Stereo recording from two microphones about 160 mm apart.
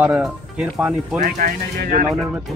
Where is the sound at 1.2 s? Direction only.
60° right (ahead or behind).